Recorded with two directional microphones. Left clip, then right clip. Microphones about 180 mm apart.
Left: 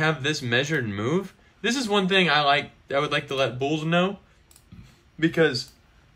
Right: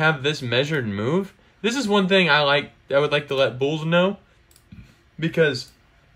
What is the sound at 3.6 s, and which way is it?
Speech, 25° right (ahead or behind).